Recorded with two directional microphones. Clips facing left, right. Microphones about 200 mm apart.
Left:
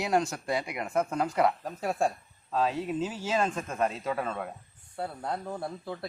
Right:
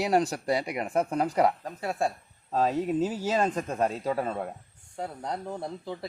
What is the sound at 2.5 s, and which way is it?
Speech, 40° right (ahead or behind).